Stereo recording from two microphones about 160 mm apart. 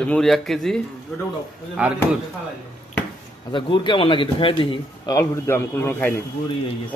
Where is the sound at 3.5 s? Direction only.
30° left (ahead or behind).